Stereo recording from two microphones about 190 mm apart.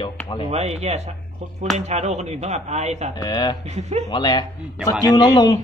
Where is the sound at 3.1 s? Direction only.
20° left (ahead or behind).